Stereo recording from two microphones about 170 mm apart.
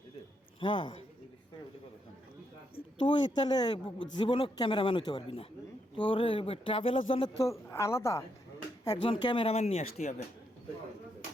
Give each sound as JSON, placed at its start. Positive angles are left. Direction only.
{"t": 0.6, "sound": "a man's voice", "side_deg": 30}
{"t": 3.0, "sound": "a man's voice", "side_deg": 25}